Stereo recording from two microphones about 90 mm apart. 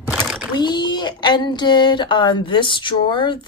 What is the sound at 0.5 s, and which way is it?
Speech, 55° left (ahead or behind).